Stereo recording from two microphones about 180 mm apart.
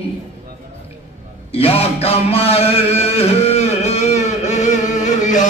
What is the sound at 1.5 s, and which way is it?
Music, 35° left (ahead or behind).